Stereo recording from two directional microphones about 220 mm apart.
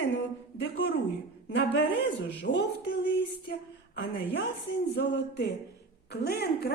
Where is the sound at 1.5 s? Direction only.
55° left (ahead or behind).